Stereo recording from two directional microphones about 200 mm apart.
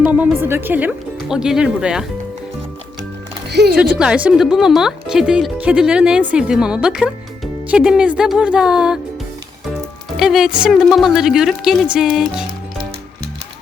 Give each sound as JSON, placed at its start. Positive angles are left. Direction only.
{"t": 0.1, "sound": "speech", "side_deg": -10}
{"t": 3.5, "sound": "speech", "side_deg": -55}
{"t": 3.8, "sound": "speech", "side_deg": -5}
{"t": 10.2, "sound": "speech", "side_deg": 0}